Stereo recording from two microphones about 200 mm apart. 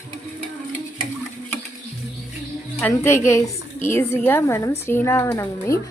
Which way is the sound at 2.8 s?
10° left (ahead or behind).